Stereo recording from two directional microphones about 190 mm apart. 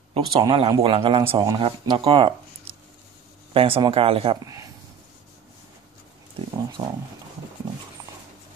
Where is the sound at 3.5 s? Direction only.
30° right (ahead or behind).